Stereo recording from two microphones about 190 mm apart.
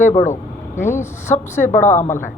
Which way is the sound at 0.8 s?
15° left (ahead or behind).